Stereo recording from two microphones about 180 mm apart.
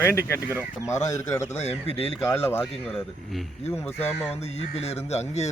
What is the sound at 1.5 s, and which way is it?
Speech, 35° left (ahead or behind).